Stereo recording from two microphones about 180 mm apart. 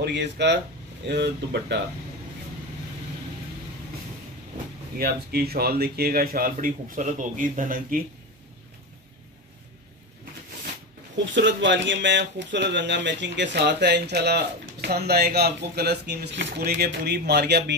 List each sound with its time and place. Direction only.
0.0 s speech: 75° right (ahead or behind)
4.9 s speech: 60° right (ahead or behind)
11.3 s speech: 80° right